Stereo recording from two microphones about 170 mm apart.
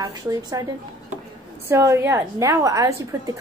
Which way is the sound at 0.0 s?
20° right (ahead or behind).